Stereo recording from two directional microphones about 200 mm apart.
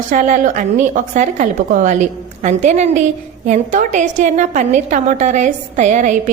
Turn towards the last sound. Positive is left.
turn(degrees=-35)  # may be behind; listen again after turning